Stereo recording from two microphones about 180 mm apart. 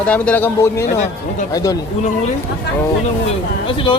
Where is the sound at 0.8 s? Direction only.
45° left (ahead or behind).